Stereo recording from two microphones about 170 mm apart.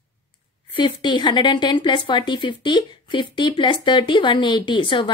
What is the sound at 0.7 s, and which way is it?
A woman's voice, 30° left (ahead or behind).